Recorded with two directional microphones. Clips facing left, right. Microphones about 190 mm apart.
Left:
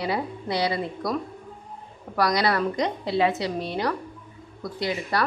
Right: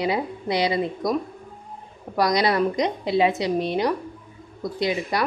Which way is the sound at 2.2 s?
20° right (ahead or behind).